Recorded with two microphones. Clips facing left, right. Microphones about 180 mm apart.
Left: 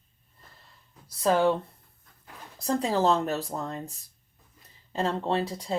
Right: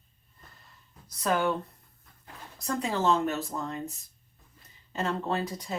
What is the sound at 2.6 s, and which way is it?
Speech, 35° left (ahead or behind).